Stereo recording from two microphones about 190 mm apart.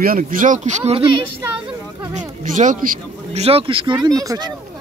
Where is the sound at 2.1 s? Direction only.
40° right (ahead or behind).